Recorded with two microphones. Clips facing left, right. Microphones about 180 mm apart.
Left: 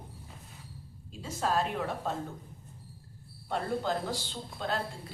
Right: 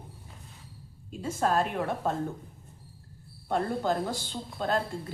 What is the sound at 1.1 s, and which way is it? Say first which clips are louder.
A woman's voice: right 4 dB; 50° right (ahead or behind).